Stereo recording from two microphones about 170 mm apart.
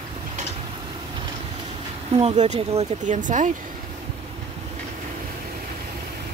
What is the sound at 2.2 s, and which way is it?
Speech, 40° right (ahead or behind).